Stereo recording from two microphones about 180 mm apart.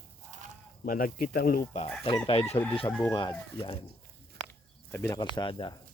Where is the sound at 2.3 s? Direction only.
35° left (ahead or behind).